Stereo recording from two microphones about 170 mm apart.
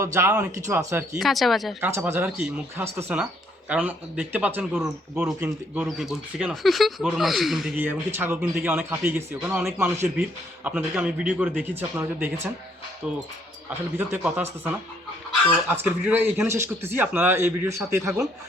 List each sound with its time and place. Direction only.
0.0 s speech: 15° right (ahead or behind)
1.2 s speech: centre (ahead or behind)
1.8 s speech: 15° right (ahead or behind)
7.8 s speech: 10° right (ahead or behind)
15.7 s speech: 10° right (ahead or behind)